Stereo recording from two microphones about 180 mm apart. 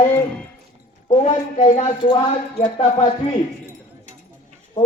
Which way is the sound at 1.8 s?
25° left (ahead or behind).